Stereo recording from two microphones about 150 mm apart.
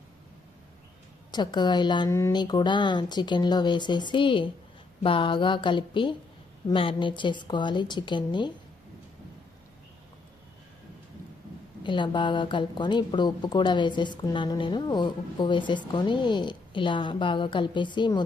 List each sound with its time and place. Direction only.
1.3 s a woman's voice: 30° left (ahead or behind)
2.0 s a woman's voice: 20° left (ahead or behind)
11.8 s speech: 30° left (ahead or behind)